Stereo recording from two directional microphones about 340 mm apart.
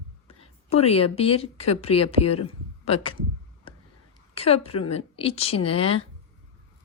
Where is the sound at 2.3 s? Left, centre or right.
Centre.